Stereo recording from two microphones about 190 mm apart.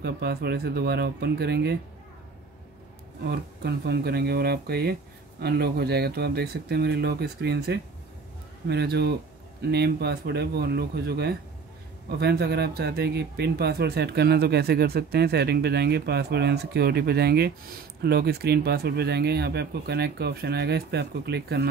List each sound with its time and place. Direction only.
0.0 s speech: 55° right (ahead or behind)
3.3 s speech: 60° right (ahead or behind)